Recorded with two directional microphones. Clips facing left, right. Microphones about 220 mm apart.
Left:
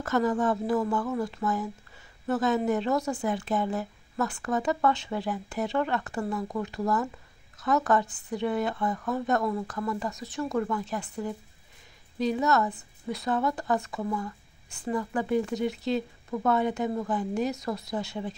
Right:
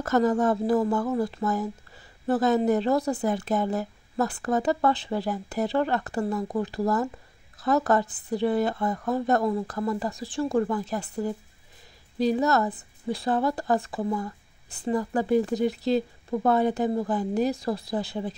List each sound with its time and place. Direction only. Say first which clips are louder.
0.0 s speech: right 3 dB; 40° right (ahead or behind)